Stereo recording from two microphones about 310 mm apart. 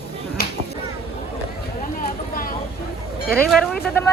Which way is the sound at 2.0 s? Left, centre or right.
Left.